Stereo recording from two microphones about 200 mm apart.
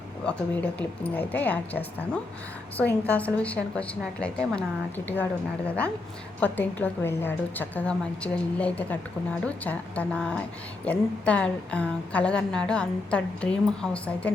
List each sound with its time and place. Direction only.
0.3 s a woman's voice: 5° left (ahead or behind)